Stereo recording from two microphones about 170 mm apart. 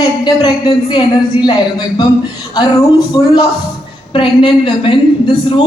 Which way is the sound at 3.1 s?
20° left (ahead or behind).